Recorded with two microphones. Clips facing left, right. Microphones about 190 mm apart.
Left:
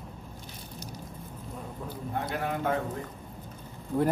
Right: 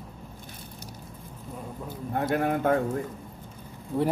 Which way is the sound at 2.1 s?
50° right (ahead or behind).